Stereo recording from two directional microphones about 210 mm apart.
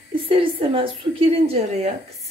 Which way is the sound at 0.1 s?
25° right (ahead or behind).